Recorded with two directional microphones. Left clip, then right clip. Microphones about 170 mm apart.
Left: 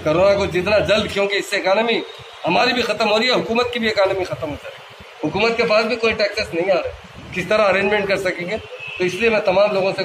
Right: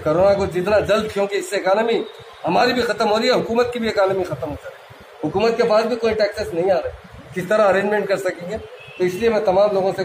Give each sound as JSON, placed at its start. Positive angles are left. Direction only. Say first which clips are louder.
{"t": 0.0, "sound": "a man's voice", "louder": "left 1 dB", "side_deg": -15}
{"t": 5.3, "sound": "a man's voice", "louder": "even", "side_deg": -20}